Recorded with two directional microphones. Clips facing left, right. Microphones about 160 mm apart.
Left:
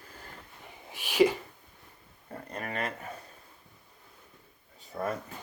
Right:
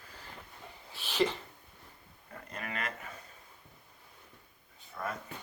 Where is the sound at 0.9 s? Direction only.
15° left (ahead or behind).